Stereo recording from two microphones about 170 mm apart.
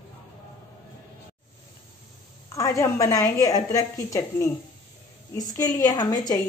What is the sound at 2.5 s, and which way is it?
A woman's voice, 20° left (ahead or behind).